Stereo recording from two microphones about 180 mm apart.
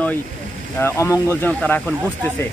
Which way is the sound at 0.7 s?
15° left (ahead or behind).